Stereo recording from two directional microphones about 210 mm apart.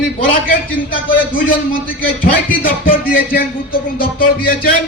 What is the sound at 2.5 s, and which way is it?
Speech, 40° left (ahead or behind).